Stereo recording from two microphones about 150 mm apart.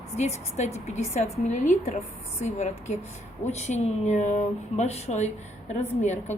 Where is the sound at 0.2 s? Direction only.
50° left (ahead or behind).